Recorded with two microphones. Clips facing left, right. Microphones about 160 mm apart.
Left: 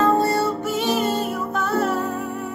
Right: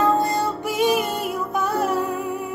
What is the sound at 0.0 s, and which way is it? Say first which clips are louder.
Music: left 1 dB; 15° right (ahead or behind).